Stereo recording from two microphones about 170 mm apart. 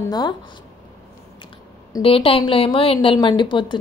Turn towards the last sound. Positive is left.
turn(degrees=25)  # may be behind; listen again after turning